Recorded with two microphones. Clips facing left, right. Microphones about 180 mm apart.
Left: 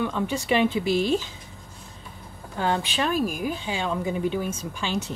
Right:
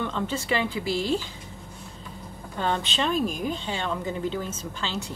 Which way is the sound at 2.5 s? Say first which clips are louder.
Left 2 dB; 10° left (ahead or behind).